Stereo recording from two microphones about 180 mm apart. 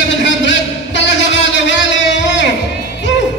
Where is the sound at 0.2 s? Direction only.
90° left.